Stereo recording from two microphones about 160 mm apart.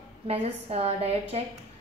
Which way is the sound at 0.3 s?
40° right (ahead or behind).